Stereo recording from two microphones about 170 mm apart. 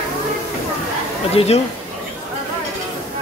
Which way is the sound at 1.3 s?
40° left (ahead or behind).